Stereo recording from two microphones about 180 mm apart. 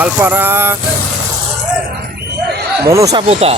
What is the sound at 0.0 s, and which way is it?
Speech, 10° right (ahead or behind).